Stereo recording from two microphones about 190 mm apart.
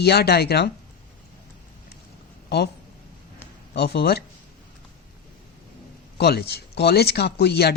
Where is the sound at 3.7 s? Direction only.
60° left (ahead or behind).